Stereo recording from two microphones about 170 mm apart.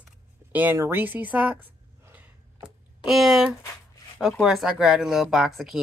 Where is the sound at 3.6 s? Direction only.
15° left (ahead or behind).